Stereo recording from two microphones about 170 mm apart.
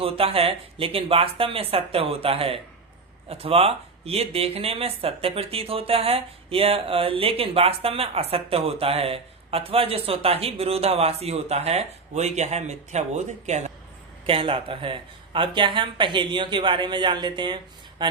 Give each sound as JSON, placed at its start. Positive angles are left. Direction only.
{"t": 0.0, "sound": "speech", "side_deg": -35}
{"t": 14.3, "sound": "speech", "side_deg": -30}